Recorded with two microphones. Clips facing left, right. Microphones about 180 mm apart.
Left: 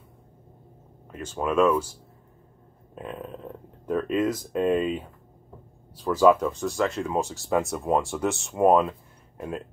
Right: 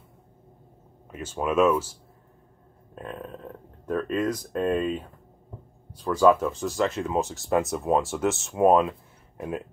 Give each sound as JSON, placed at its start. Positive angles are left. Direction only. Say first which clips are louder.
{"t": 1.0, "sound": "speech", "louder": "even", "side_deg": -5}
{"t": 2.9, "sound": "speech", "louder": "left 1 dB", "side_deg": 5}